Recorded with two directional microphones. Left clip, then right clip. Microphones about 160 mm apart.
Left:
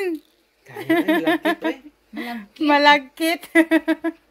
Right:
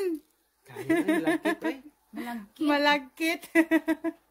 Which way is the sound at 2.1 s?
5° left (ahead or behind).